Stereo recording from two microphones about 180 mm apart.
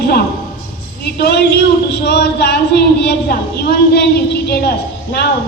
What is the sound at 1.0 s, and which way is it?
A woman's voice, 65° left (ahead or behind).